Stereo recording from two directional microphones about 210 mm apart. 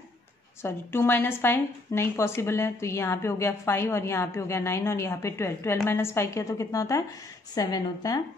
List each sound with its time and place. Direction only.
0.6 s a woman's voice: 10° left (ahead or behind)